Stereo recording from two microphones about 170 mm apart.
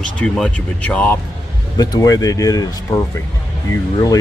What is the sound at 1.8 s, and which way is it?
Speech, 20° left (ahead or behind).